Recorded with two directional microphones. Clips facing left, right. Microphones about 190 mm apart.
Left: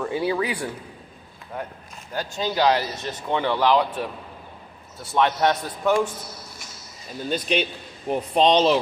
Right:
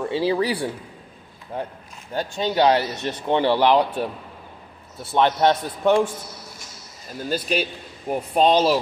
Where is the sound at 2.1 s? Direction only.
25° right (ahead or behind).